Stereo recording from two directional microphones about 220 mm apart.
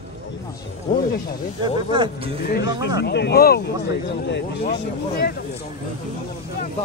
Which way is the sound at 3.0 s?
50° left (ahead or behind).